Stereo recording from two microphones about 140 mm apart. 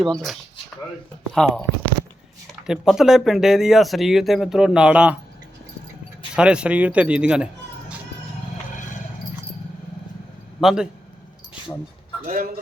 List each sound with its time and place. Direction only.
0.0 s speech: 5° left (ahead or behind)
2.6 s speech: 5° right (ahead or behind)
6.3 s speech: 5° right (ahead or behind)
10.6 s speech: 5° right (ahead or behind)
12.2 s speech: 75° right (ahead or behind)